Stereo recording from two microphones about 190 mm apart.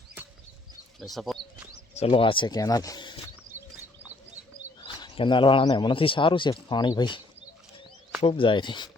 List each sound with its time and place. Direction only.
0.9 s bird: centre (ahead or behind)
2.0 s speech: 30° left (ahead or behind)
4.8 s speech: 25° left (ahead or behind)
8.2 s speech: 30° left (ahead or behind)